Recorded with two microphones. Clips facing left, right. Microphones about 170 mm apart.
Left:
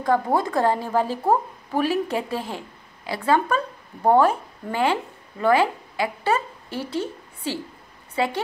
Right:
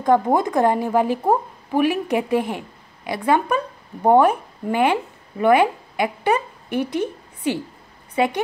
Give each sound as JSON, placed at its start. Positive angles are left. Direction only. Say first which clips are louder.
{"t": 0.0, "sound": "a woman's voice", "louder": "right 4 dB", "side_deg": -20}